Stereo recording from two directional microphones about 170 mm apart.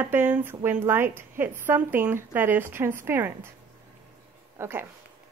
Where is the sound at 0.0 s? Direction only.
10° right (ahead or behind).